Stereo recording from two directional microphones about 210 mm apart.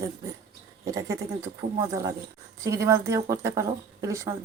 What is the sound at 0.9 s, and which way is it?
Speech, 15° right (ahead or behind).